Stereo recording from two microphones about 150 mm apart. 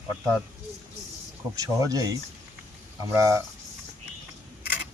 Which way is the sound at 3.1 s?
20° right (ahead or behind).